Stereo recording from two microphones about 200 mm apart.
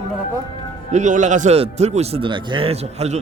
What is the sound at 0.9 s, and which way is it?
A man's voice, 40° right (ahead or behind).